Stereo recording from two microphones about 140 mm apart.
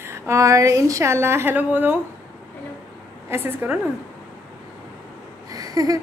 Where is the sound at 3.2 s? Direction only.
15° right (ahead or behind).